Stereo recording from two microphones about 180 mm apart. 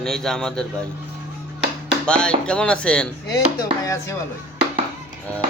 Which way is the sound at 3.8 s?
15° left (ahead or behind).